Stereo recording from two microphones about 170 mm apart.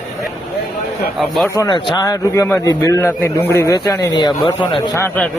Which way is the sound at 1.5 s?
25° left (ahead or behind).